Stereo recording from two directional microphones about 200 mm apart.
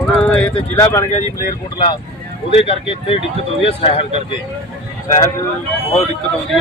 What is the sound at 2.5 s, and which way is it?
Speech, 30° left (ahead or behind).